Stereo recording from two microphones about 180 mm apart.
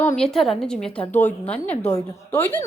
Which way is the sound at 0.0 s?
10° left (ahead or behind).